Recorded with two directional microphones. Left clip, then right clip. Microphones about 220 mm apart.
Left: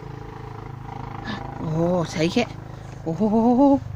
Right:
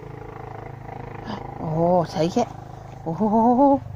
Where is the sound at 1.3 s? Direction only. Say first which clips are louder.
Right 1 dB; 5° left (ahead or behind).